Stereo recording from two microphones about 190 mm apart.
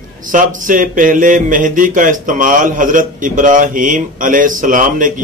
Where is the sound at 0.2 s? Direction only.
45° right (ahead or behind).